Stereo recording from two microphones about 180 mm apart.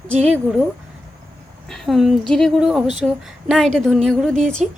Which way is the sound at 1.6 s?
Centre (ahead or behind).